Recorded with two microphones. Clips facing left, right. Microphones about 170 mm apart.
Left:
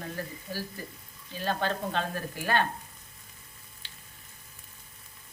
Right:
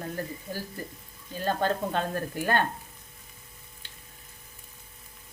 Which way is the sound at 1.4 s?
45° right (ahead or behind).